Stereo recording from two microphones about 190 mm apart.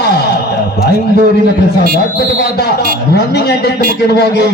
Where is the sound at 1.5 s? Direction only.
55° left (ahead or behind).